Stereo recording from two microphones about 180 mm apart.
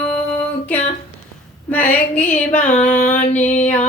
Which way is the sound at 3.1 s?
40° left (ahead or behind).